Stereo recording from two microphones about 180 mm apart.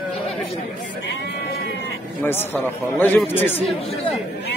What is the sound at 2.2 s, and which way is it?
Speech, 10° left (ahead or behind).